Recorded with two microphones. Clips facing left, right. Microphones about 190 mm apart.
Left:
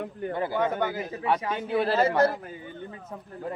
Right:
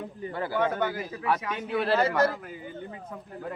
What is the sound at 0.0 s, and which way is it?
Speech, 65° left (ahead or behind).